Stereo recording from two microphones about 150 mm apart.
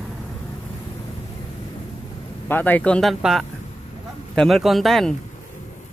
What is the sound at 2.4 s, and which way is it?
A man's voice, 10° left (ahead or behind).